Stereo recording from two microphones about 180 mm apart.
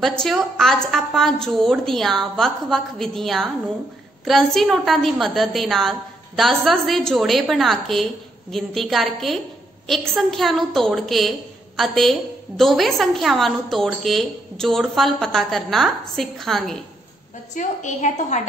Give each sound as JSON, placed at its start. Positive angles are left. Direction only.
{"t": 0.0, "sound": "a woman's voice", "side_deg": 5}
{"t": 17.6, "sound": "a woman's voice", "side_deg": 45}